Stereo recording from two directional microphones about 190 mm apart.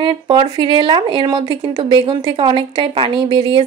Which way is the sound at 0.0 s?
25° right (ahead or behind).